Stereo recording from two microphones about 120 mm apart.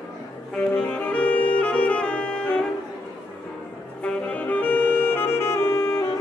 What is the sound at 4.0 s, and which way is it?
Saxophone, 10° left (ahead or behind).